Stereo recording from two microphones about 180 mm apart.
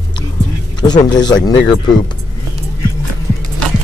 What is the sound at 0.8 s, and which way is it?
Music, 25° left (ahead or behind).